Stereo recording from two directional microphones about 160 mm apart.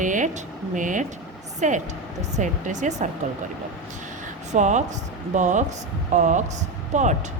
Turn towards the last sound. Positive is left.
turn(degrees=-50)  # may be behind; listen again after turning